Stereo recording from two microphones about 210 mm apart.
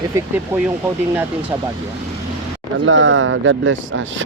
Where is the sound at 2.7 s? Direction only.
65° right (ahead or behind).